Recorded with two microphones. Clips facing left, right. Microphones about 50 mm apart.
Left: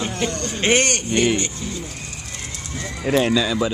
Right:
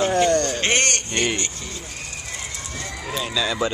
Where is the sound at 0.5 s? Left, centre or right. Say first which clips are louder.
Left 2 dB; centre.